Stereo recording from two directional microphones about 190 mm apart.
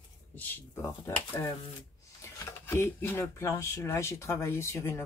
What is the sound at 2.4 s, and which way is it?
Speech, 10° left (ahead or behind).